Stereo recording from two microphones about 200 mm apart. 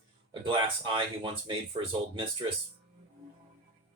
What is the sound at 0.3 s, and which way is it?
Speech, 25° right (ahead or behind).